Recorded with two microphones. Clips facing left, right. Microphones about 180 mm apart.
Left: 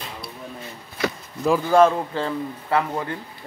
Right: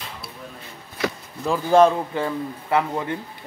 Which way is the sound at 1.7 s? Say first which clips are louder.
Right 2 dB; 15° right (ahead or behind).